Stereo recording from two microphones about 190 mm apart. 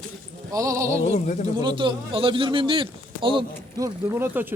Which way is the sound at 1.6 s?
25° right (ahead or behind).